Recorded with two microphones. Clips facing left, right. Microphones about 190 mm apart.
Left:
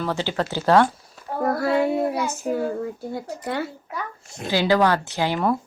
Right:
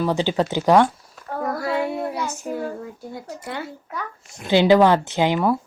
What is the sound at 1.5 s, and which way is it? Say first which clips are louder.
Child singing: left 4 dB; 35° left (ahead or behind).